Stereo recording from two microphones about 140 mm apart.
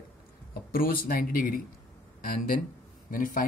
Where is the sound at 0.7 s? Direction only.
90° left.